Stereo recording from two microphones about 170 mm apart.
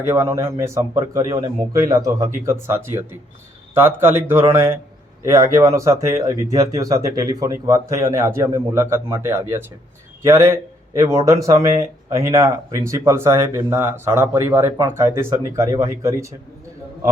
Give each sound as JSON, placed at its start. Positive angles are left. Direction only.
{"t": 0.1, "sound": "speech", "side_deg": -15}